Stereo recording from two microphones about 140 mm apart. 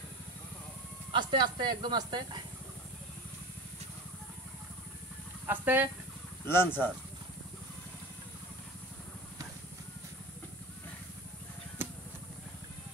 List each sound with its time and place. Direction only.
1.1 s speech: 30° right (ahead or behind)
5.5 s speech: 15° right (ahead or behind)
6.4 s speech: 15° left (ahead or behind)